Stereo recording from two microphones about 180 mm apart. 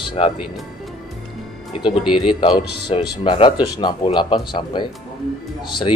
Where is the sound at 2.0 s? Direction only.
5° right (ahead or behind).